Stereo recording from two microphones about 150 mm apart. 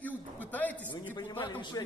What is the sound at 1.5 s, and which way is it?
Speech, 30° left (ahead or behind).